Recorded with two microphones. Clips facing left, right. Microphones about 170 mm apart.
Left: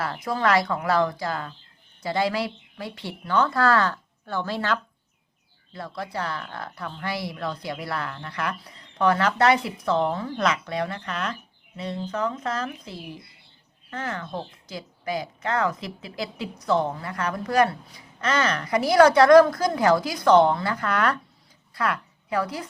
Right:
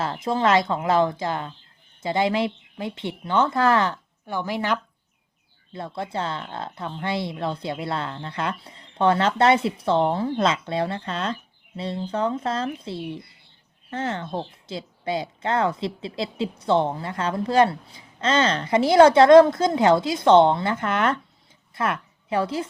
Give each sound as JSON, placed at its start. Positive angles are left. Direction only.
{"t": 0.0, "sound": "a woman's voice", "side_deg": -25}